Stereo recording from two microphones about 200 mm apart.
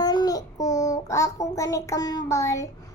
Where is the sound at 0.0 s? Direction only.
20° left (ahead or behind).